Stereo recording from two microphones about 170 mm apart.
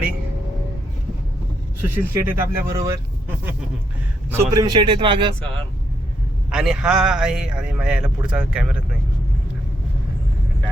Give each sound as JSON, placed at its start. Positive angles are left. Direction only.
{"t": 1.8, "sound": "speech", "side_deg": -10}
{"t": 6.5, "sound": "a man's voice", "side_deg": -5}